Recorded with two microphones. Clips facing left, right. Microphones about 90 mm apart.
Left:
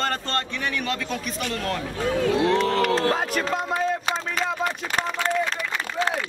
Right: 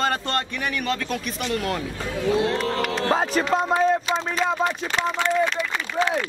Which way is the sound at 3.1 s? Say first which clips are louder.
Right 4 dB; 30° right (ahead or behind).